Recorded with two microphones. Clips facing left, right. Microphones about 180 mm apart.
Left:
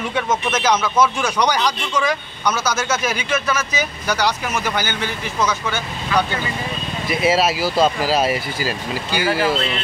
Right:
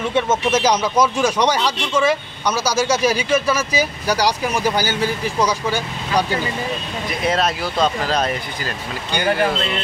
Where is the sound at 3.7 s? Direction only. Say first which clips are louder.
Right 3 dB; 35° right (ahead or behind).